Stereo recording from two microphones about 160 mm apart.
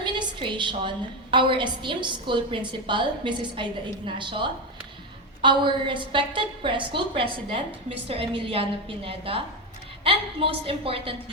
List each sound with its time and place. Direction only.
0.0 s a woman's voice: 30° right (ahead or behind)